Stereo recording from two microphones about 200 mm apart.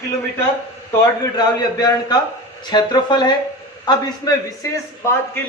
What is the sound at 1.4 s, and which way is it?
A man's voice, 20° left (ahead or behind).